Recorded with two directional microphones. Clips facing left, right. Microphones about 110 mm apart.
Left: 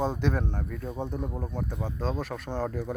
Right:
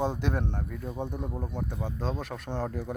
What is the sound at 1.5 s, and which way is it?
Speech, 15° right (ahead or behind).